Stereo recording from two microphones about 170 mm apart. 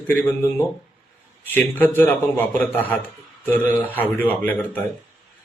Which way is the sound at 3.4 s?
10° left (ahead or behind).